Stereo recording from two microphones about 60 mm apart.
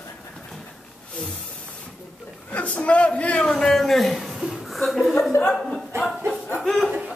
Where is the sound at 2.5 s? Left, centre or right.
Left.